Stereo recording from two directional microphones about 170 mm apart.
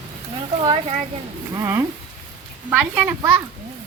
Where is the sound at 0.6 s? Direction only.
30° right (ahead or behind).